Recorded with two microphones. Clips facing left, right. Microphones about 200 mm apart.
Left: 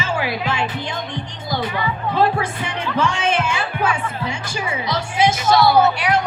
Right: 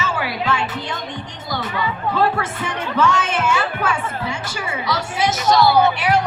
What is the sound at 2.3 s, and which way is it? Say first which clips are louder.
Music: left 1 dB; 15° left (ahead or behind).